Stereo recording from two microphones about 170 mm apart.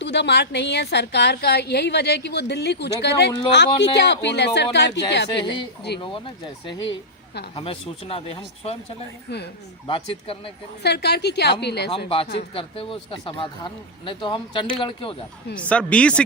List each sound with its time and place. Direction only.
0.0 s a woman's voice: 90° left
6.0 s speech: 30° left (ahead or behind)
9.8 s speech: 30° left (ahead or behind)
10.8 s a woman's voice: 75° left (ahead or behind)
12.0 s speech: 35° left (ahead or behind)
15.5 s speech: 5° left (ahead or behind)